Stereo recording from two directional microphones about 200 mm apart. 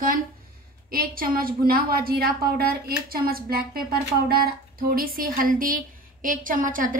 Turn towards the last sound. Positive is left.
turn(degrees=-40)  # may be behind; listen again after turning